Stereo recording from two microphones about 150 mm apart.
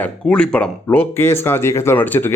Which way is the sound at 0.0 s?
5° left (ahead or behind).